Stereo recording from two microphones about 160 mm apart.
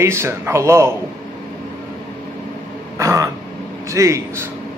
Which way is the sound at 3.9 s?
20° right (ahead or behind).